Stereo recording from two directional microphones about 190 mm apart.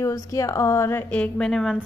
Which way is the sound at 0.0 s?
15° left (ahead or behind).